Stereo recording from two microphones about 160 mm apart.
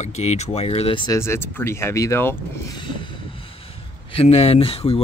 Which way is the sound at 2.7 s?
30° left (ahead or behind).